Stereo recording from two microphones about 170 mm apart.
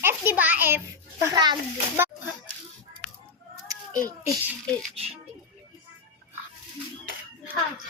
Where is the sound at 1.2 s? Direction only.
25° right (ahead or behind).